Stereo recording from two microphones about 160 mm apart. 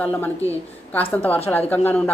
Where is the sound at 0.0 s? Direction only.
10° left (ahead or behind).